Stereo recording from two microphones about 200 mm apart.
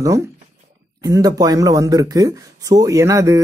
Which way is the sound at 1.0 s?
20° right (ahead or behind).